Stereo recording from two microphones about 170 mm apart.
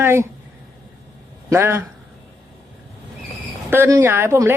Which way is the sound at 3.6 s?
15° right (ahead or behind).